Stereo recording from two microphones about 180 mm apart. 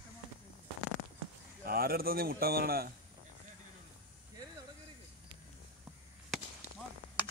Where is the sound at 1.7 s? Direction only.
55° right (ahead or behind).